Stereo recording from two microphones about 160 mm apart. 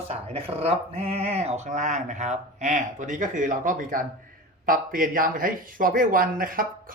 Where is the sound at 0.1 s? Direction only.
40° right (ahead or behind).